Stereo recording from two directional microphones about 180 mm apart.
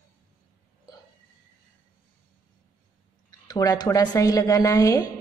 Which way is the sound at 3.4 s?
20° left (ahead or behind).